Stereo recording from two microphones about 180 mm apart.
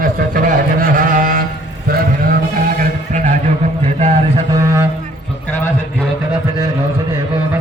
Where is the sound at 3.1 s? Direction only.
45° right (ahead or behind).